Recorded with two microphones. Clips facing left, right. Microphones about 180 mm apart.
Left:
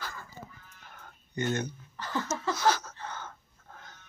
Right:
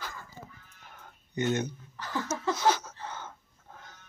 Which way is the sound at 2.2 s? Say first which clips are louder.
Right 1 dB; 20° right (ahead or behind).